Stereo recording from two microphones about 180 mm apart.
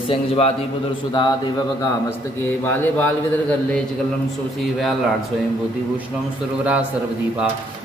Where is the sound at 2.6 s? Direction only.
10° left (ahead or behind).